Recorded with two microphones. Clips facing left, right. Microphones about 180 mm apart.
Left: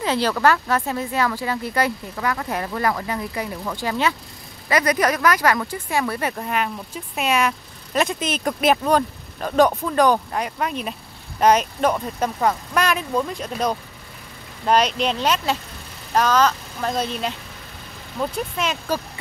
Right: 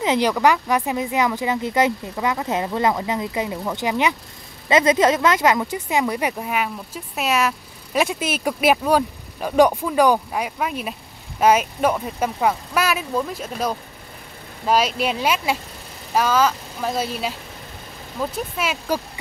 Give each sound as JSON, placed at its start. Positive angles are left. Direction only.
{"t": 0.0, "sound": "speech", "side_deg": -15}